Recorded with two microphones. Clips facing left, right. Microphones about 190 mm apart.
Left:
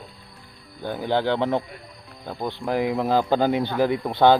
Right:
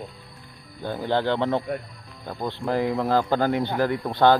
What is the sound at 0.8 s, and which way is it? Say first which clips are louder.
Speech: left 1 dB; 10° left (ahead or behind).